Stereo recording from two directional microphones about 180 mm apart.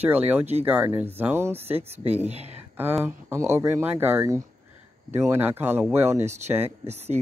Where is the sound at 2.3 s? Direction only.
35° right (ahead or behind).